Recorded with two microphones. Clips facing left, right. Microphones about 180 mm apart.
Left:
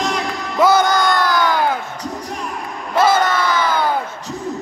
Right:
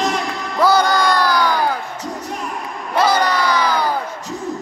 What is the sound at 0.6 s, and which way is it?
Speech, 20° left (ahead or behind).